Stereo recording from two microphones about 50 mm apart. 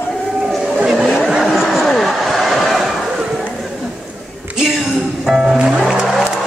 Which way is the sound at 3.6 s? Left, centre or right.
Centre.